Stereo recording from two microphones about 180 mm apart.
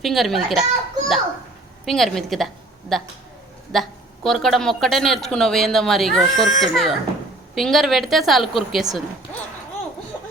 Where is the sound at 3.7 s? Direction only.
Centre (ahead or behind).